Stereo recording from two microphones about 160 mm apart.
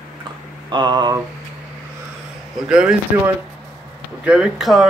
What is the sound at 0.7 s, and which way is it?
Speech, 25° right (ahead or behind).